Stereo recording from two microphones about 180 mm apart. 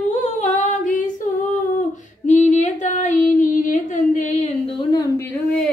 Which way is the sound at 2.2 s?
40° left (ahead or behind).